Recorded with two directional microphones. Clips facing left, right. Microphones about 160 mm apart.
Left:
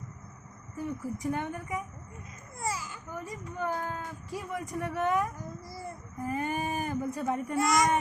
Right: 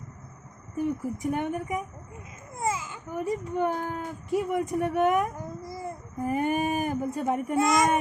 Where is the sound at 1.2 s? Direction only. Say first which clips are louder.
Right 5 dB; 20° right (ahead or behind).